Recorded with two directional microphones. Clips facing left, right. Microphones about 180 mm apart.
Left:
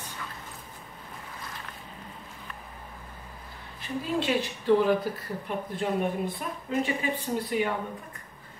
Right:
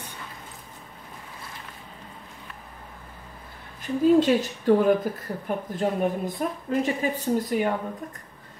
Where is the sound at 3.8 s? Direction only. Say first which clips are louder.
Right 11 dB; 45° right (ahead or behind).